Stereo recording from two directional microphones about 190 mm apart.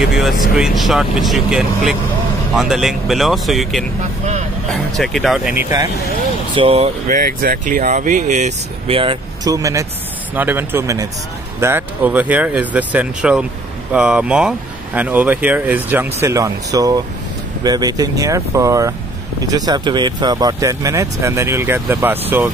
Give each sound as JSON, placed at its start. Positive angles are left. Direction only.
{"t": 0.0, "sound": "speech", "side_deg": 0}
{"t": 6.5, "sound": "speech", "side_deg": -30}